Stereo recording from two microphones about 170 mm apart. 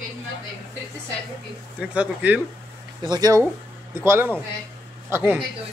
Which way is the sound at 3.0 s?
25° right (ahead or behind).